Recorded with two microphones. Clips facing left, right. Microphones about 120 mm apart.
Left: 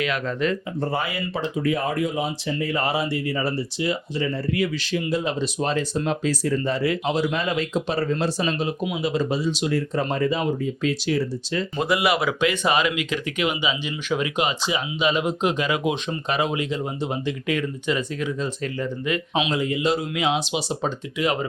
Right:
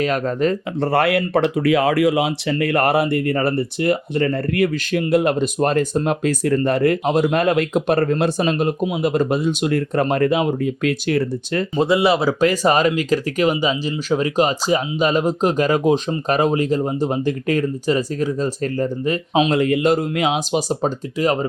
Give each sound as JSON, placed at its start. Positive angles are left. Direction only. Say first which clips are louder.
{"t": 0.0, "sound": "speech", "louder": "right 5 dB", "side_deg": -40}
{"t": 0.8, "sound": "speech", "louder": "right 13 dB", "side_deg": -70}
{"t": 11.8, "sound": "speech", "louder": "right 6 dB", "side_deg": -30}
{"t": 12.4, "sound": "speech", "louder": "right 5 dB", "side_deg": -40}
{"t": 19.5, "sound": "speech", "louder": "right 6 dB", "side_deg": -60}